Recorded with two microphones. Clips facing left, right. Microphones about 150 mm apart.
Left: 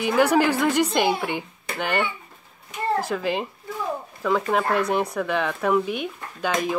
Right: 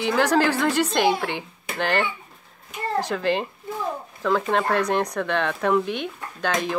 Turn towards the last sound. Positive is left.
turn(degrees=5)  # may be behind; listen again after turning